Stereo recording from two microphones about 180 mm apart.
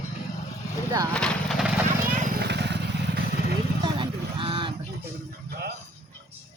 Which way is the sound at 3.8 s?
30° right (ahead or behind).